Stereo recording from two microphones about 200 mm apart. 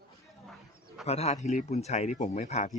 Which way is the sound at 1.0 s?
30° left (ahead or behind).